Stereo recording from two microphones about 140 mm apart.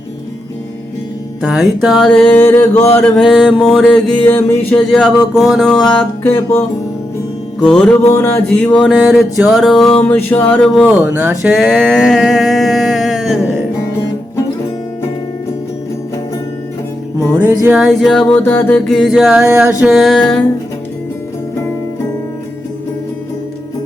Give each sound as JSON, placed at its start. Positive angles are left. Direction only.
{"t": 1.4, "sound": "speech", "side_deg": -5}
{"t": 2.4, "sound": "mantra", "side_deg": 20}
{"t": 3.0, "sound": "speech", "side_deg": 0}
{"t": 4.3, "sound": "mantra", "side_deg": 15}
{"t": 4.9, "sound": "speech", "side_deg": 0}
{"t": 7.6, "sound": "speech", "side_deg": 5}
{"t": 7.9, "sound": "mantra", "side_deg": 20}
{"t": 8.5, "sound": "speech", "side_deg": 5}
{"t": 10.0, "sound": "mantra", "side_deg": 15}
{"t": 10.5, "sound": "speech", "side_deg": 5}
{"t": 17.3, "sound": "speech", "side_deg": -10}
{"t": 18.9, "sound": "speech", "side_deg": 0}